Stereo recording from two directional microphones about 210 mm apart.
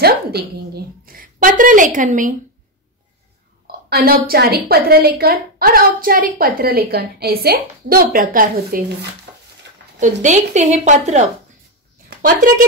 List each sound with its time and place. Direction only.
0.0 s a woman's voice: 50° right (ahead or behind)
3.9 s a woman's voice: 45° right (ahead or behind)
9.9 s a woman's voice: 35° right (ahead or behind)